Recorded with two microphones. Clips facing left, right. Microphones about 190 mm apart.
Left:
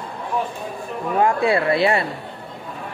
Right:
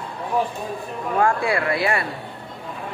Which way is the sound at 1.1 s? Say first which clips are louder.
Left 2 dB; 20° left (ahead or behind).